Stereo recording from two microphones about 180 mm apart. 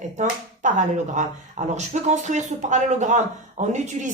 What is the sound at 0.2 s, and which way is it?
Speech, 45° right (ahead or behind).